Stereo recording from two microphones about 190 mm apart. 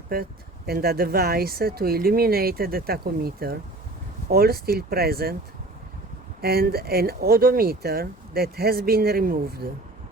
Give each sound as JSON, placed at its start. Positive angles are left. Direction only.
{"t": 0.1, "sound": "speech", "side_deg": -55}
{"t": 6.4, "sound": "speech", "side_deg": -55}